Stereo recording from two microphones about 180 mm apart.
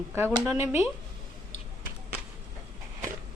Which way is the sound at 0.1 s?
15° right (ahead or behind).